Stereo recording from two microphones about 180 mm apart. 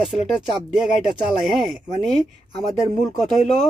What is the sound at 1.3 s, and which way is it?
Speech, centre (ahead or behind).